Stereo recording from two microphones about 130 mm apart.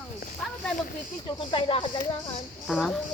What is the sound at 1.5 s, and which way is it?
Speech, 40° left (ahead or behind).